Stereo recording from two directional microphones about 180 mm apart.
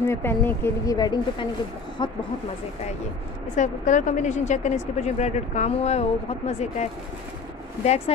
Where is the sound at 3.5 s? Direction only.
45° left (ahead or behind).